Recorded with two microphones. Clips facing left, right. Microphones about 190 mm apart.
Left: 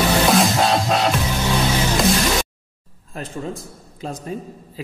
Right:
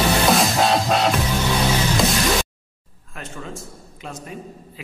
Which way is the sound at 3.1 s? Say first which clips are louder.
Left 5 dB; 35° left (ahead or behind).